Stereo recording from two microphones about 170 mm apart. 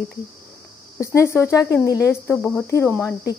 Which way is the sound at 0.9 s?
15° left (ahead or behind).